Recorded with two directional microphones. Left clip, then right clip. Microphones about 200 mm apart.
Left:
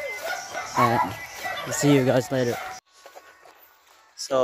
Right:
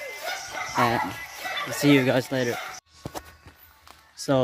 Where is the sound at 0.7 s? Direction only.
Centre (ahead or behind).